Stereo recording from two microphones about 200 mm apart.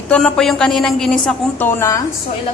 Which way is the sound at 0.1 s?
5° left (ahead or behind).